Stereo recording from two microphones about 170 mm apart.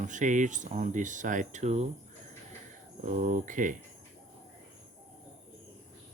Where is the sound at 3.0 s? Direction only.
45° right (ahead or behind).